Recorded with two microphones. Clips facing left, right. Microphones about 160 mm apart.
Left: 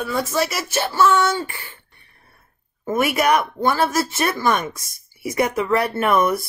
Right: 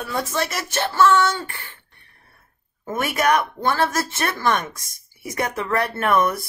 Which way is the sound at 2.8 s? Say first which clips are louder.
Left 2 dB; 10° left (ahead or behind).